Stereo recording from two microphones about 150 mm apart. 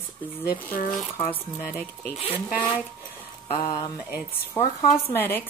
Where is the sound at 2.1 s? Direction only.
40° left (ahead or behind).